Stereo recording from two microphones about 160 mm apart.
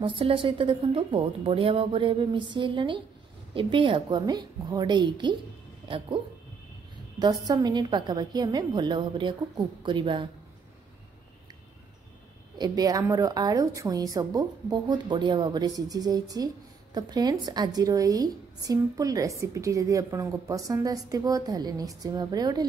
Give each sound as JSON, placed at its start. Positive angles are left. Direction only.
{"t": 0.0, "sound": "a woman's voice", "side_deg": -35}
{"t": 7.2, "sound": "a woman's voice", "side_deg": -25}
{"t": 12.5, "sound": "a woman's voice", "side_deg": -25}